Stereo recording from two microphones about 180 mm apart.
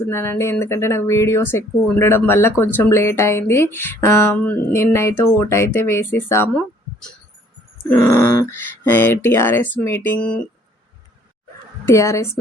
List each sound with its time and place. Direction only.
0.0 s speech: 15° left (ahead or behind)
7.9 s speech: 10° left (ahead or behind)
11.9 s speech: 15° left (ahead or behind)